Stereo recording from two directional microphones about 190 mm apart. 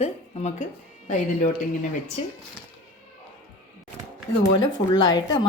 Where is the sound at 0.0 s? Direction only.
35° left (ahead or behind).